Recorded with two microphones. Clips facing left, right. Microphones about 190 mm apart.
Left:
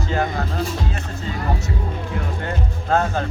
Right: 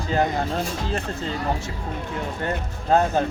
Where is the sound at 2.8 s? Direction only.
15° right (ahead or behind).